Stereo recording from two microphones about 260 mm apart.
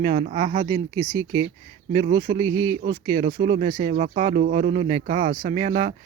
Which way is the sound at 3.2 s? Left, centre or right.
Right.